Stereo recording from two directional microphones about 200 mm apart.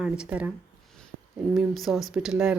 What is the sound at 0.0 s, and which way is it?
Speech, 5° right (ahead or behind).